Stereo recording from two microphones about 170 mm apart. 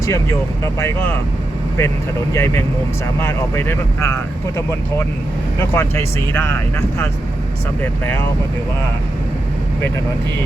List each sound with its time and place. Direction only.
0.0 s speech: 15° left (ahead or behind)
5.5 s speech: 15° left (ahead or behind)